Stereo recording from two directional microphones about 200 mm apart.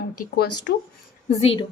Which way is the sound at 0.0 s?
50° left (ahead or behind).